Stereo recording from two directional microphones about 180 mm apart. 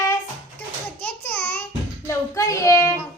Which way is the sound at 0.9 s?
10° left (ahead or behind).